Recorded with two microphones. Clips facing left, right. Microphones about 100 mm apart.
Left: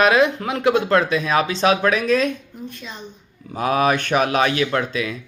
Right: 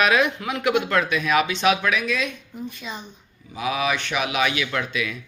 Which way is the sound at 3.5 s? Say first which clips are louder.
Left 6 dB; 45° left (ahead or behind).